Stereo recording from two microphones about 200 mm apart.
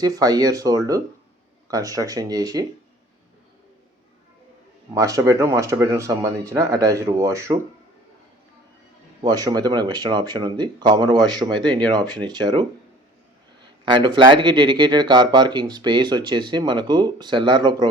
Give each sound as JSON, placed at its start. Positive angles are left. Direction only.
{"t": 0.0, "sound": "speech", "side_deg": -20}
{"t": 4.9, "sound": "speech", "side_deg": -15}
{"t": 9.2, "sound": "speech", "side_deg": -20}
{"t": 13.8, "sound": "speech", "side_deg": -20}